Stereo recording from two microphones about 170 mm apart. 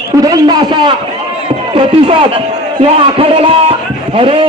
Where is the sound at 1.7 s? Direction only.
30° right (ahead or behind).